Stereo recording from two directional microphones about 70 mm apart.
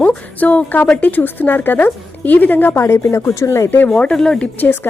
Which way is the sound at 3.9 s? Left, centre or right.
Centre.